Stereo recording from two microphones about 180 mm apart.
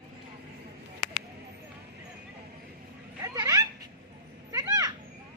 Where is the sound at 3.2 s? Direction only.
20° right (ahead or behind).